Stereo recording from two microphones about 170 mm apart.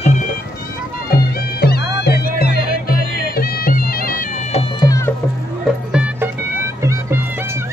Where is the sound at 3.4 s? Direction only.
60° left (ahead or behind).